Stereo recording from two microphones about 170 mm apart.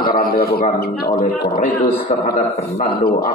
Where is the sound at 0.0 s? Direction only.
60° left (ahead or behind).